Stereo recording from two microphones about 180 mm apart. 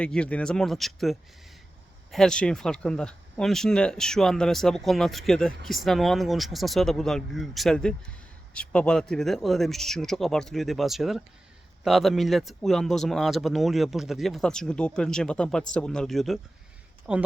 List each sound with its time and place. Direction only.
0.0 s speech: 5° left (ahead or behind)